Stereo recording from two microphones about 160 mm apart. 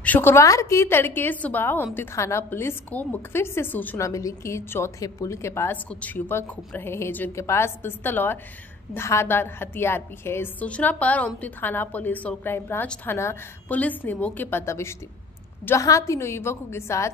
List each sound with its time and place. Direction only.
0.0 s a woman's voice: 10° left (ahead or behind)